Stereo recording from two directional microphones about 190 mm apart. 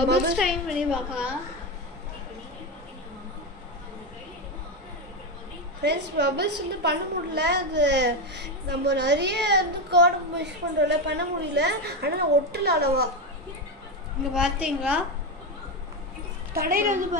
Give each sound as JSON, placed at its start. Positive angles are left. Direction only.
{"t": 0.4, "sound": "a woman's voice", "side_deg": -5}
{"t": 5.8, "sound": "a woman's voice", "side_deg": -65}
{"t": 14.3, "sound": "a woman's voice", "side_deg": -5}
{"t": 16.5, "sound": "a woman's voice", "side_deg": -50}